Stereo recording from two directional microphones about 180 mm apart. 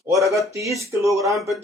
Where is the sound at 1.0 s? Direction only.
15° right (ahead or behind).